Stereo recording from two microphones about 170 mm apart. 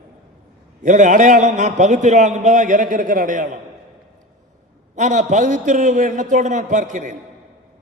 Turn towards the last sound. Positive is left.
turn(degrees=-45)  # may be behind; listen again after turning